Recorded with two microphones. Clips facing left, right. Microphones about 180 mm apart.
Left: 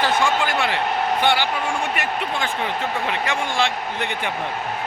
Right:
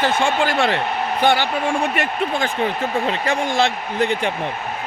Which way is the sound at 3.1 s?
35° right (ahead or behind).